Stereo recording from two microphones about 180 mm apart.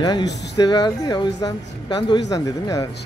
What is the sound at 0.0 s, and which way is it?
Speech, 20° left (ahead or behind).